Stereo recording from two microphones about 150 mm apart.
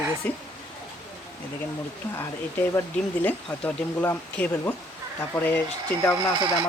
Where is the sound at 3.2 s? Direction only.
15° left (ahead or behind).